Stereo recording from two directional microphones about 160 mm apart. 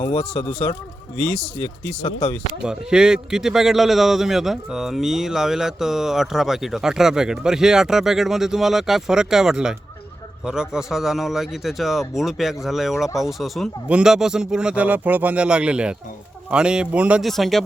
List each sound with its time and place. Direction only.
0.3 s speech: 30° left (ahead or behind)
1.2 s a man's voice: 5° left (ahead or behind)
2.0 s speech: 30° left (ahead or behind)
2.6 s a man's voice: 5° right (ahead or behind)